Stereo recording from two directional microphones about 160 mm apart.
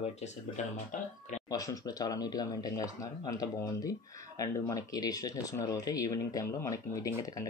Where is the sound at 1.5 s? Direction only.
20° left (ahead or behind).